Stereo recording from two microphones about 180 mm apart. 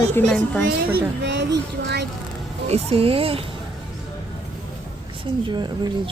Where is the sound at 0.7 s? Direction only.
70° right (ahead or behind).